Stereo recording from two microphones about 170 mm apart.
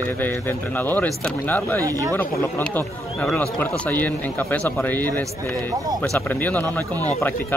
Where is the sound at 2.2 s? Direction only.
10° left (ahead or behind).